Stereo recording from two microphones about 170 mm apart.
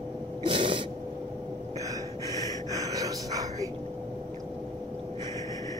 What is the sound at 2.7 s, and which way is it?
Music, 20° right (ahead or behind).